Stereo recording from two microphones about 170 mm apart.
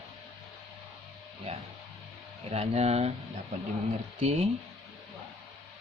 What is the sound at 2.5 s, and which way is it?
Speech, 40° right (ahead or behind).